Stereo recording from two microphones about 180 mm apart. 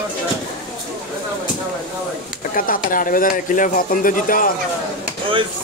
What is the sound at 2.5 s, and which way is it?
Speech, 50° left (ahead or behind).